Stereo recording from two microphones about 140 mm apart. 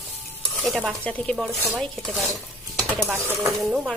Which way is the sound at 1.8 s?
Centre (ahead or behind).